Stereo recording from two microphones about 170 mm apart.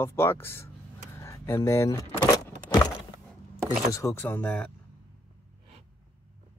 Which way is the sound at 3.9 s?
20° left (ahead or behind).